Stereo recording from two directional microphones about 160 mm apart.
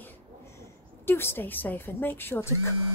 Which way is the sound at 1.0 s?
15° left (ahead or behind).